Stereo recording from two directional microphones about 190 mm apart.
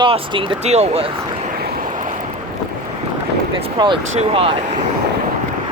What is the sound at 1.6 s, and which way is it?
Waves, 50° right (ahead or behind).